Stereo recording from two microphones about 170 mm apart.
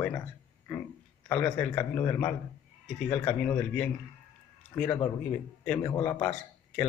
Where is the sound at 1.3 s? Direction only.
10° left (ahead or behind).